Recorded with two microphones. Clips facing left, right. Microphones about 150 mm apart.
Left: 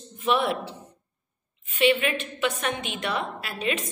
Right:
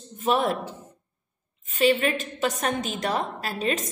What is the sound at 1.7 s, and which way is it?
A woman's voice, 40° right (ahead or behind).